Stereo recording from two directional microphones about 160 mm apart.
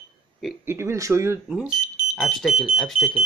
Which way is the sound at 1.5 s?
5° right (ahead or behind).